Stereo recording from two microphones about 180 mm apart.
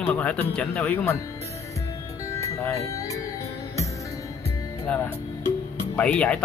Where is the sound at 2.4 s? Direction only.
15° left (ahead or behind).